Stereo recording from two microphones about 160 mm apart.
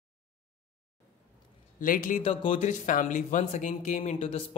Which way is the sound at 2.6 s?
50° left (ahead or behind).